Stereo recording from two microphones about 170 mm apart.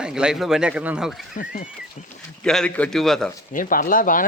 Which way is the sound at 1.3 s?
50° left (ahead or behind).